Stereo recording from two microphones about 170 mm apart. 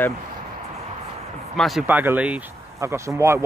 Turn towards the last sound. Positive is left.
turn(degrees=-15)  # may be behind; listen again after turning